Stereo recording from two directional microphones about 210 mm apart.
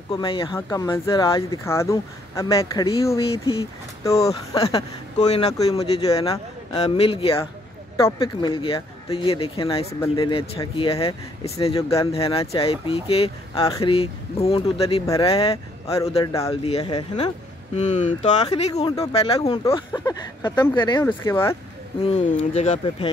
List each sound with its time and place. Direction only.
0.1 s speech: 25° left (ahead or behind)
4.6 s speech: 30° left (ahead or behind)
6.1 s speech: 20° left (ahead or behind)
16.2 s speech: 15° left (ahead or behind)
17.7 s speech: 35° left (ahead or behind)
19.6 s speech: 15° left (ahead or behind)
22.0 s speech: 30° left (ahead or behind)